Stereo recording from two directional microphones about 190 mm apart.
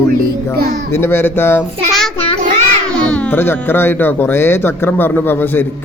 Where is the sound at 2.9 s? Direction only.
5° left (ahead or behind).